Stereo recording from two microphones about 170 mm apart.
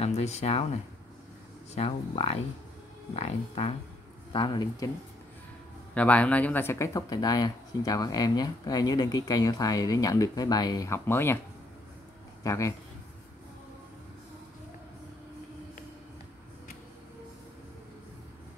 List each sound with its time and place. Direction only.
0.0 s speech: 40° left (ahead or behind)
1.8 s speech: 35° left (ahead or behind)
5.9 s speech: 10° left (ahead or behind)
12.4 s speech: 20° left (ahead or behind)